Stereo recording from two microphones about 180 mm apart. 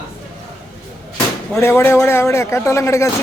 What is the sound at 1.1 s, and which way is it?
Speech, 15° left (ahead or behind).